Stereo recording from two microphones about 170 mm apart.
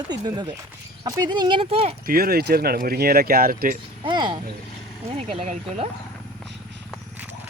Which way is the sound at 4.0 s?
30° right (ahead or behind).